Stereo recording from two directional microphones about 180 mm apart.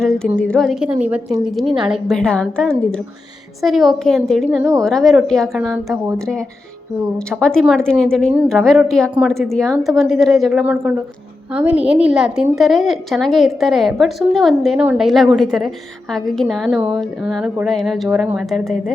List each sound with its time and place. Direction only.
0.3 s a woman's voice: 5° left (ahead or behind)
5.7 s a woman's voice: 15° right (ahead or behind)
6.1 s a woman's voice: 5° left (ahead or behind)